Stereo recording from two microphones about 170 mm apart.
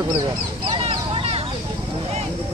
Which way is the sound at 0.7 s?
35° right (ahead or behind).